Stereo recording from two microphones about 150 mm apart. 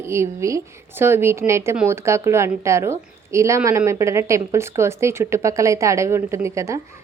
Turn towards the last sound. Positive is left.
turn(degrees=-20)  # may be behind; listen again after turning